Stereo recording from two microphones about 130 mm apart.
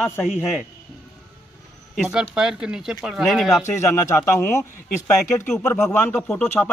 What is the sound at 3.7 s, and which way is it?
Speech, 20° left (ahead or behind).